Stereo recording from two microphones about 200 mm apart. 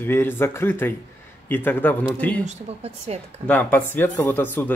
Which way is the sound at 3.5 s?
10° left (ahead or behind).